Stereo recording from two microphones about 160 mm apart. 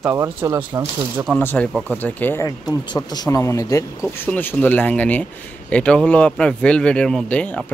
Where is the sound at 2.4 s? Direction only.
20° left (ahead or behind).